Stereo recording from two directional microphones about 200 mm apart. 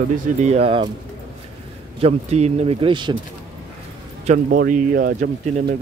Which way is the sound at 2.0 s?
35° right (ahead or behind).